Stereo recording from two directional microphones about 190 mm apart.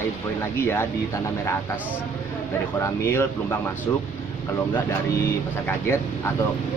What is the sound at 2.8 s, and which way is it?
Speech, 15° left (ahead or behind).